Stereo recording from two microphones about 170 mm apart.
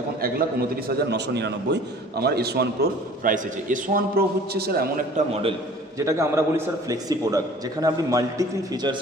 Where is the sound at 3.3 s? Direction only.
50° right (ahead or behind).